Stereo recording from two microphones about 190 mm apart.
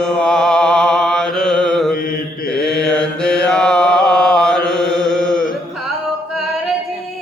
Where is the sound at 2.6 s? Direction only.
5° left (ahead or behind).